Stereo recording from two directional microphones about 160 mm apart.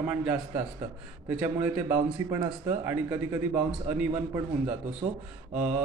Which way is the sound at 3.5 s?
5° right (ahead or behind).